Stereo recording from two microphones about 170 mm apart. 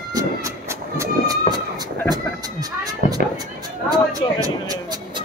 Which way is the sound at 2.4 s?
20° right (ahead or behind).